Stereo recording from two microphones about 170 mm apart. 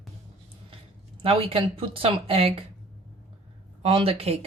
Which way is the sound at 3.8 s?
35° right (ahead or behind).